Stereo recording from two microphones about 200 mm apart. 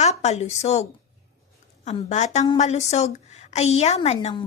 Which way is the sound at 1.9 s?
35° left (ahead or behind).